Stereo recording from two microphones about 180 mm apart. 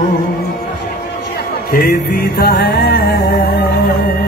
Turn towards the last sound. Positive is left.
turn(degrees=60)  # may be behind; listen again after turning